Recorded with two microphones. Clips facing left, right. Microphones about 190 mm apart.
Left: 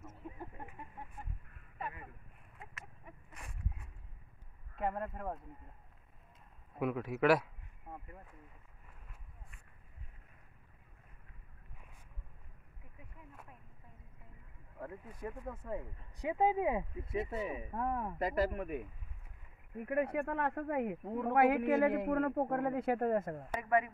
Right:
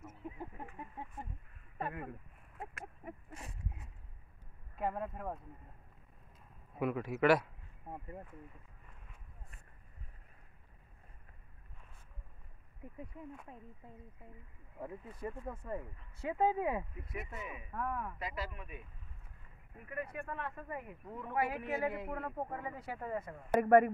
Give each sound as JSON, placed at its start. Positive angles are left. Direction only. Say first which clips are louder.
{"t": 0.0, "sound": "a sound", "louder": "right 2 dB", "side_deg": -15}
{"t": 1.8, "sound": "a sound", "louder": "right 4 dB", "side_deg": -55}
{"t": 3.3, "sound": "a sound", "louder": "right 2 dB", "side_deg": -25}
{"t": 4.7, "sound": "speech", "louder": "even", "side_deg": 0}
{"t": 6.8, "sound": "speech", "louder": "even", "side_deg": 0}
{"t": 15.4, "sound": "speech", "louder": "even", "side_deg": 5}
{"t": 16.2, "sound": "speech", "louder": "left 1 dB", "side_deg": 15}
{"t": 18.1, "sound": "speech", "louder": "left 9 dB", "side_deg": 50}
{"t": 19.8, "sound": "speech", "louder": "left 9 dB", "side_deg": 65}
{"t": 22.2, "sound": "speech", "louder": "left 8 dB", "side_deg": 60}
{"t": 23.6, "sound": "speech", "louder": "right 7 dB", "side_deg": -50}